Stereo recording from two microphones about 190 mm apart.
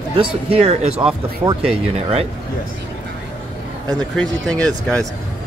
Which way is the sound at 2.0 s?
30° right (ahead or behind).